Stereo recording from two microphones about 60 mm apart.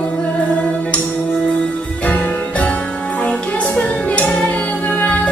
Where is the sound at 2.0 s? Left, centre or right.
Left.